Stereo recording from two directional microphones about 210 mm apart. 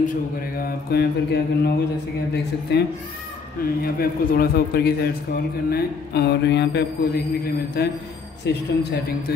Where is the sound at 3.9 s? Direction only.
45° left (ahead or behind).